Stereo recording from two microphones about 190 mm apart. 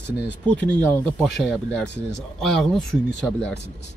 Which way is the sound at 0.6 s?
5° left (ahead or behind).